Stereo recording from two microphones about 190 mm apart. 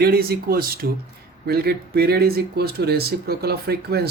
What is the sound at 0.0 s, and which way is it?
Speech, 55° right (ahead or behind).